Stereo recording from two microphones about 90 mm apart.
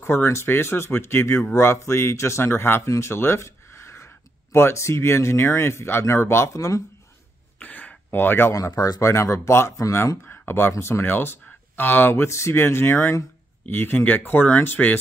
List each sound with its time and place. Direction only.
0.0 s speech: 25° left (ahead or behind)
7.5 s a sound: 15° left (ahead or behind)
8.5 s speech: 35° left (ahead or behind)
10.2 s speech: 25° left (ahead or behind)